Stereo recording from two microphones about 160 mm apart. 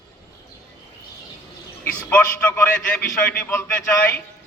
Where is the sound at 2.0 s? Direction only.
10° left (ahead or behind).